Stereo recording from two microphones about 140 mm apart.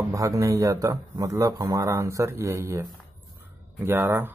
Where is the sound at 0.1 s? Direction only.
20° right (ahead or behind).